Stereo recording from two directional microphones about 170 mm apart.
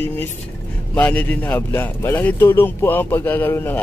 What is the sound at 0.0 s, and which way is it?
Speech, 10° left (ahead or behind).